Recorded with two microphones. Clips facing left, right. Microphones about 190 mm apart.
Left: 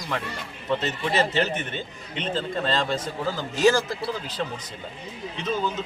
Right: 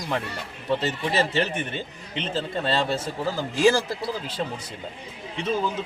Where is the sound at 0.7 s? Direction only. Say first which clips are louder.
Even; 10° right (ahead or behind).